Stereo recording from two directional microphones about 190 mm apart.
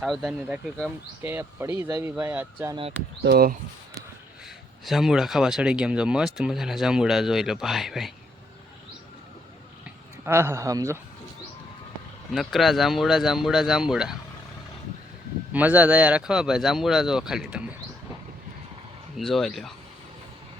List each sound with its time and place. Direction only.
0.0 s speech: centre (ahead or behind)
3.2 s speech: 55° right (ahead or behind)
4.4 s speech: centre (ahead or behind)
10.2 s speech: 15° right (ahead or behind)
12.3 s speech: centre (ahead or behind)
15.5 s speech: 10° right (ahead or behind)
19.1 s speech: centre (ahead or behind)